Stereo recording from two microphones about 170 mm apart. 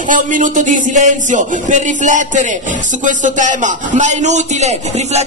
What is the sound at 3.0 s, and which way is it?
A man's voice, 50° right (ahead or behind).